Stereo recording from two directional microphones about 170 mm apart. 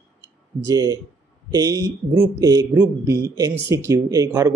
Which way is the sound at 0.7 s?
20° right (ahead or behind).